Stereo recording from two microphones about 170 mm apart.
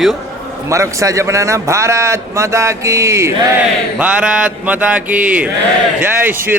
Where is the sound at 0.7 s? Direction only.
20° right (ahead or behind).